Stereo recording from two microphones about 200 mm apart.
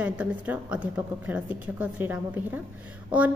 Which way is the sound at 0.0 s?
5° right (ahead or behind).